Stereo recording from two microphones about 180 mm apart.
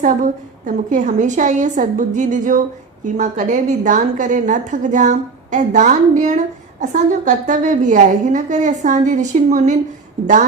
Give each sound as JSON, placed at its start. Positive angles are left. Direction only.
{"t": 0.0, "sound": "a woman's voice", "side_deg": -45}